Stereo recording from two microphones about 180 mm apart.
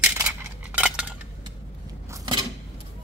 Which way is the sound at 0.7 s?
5° right (ahead or behind).